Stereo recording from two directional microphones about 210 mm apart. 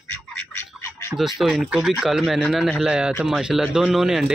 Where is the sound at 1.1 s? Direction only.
Centre (ahead or behind).